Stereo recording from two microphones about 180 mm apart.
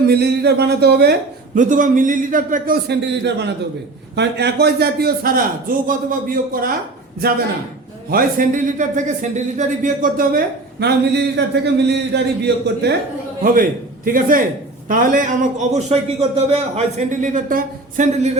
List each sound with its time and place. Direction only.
0.1 s speech: 65° right (ahead or behind)
1.5 s a man's voice: 45° right (ahead or behind)
8.1 s a man's voice: 45° right (ahead or behind); by 12.9 s 70° right (ahead or behind)
13.4 s a man's voice: 50° right (ahead or behind)